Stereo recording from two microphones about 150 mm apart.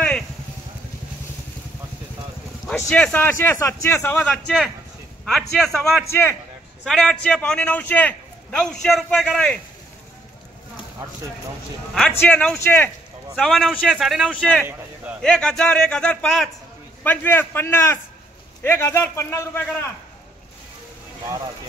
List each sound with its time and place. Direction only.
2.9 s speech: 10° left (ahead or behind)
4.2 s a man's voice: 5° left (ahead or behind)
6.0 s a man's voice: 15° left (ahead or behind)
12.1 s speech: 10° left (ahead or behind)
13.4 s a man's voice: centre (ahead or behind)